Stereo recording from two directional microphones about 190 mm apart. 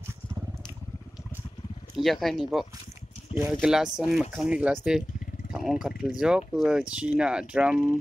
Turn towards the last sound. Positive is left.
turn(degrees=-5)  # may be behind; listen again after turning